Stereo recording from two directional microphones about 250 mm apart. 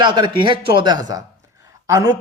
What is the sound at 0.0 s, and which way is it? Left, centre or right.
A man's voice, centre.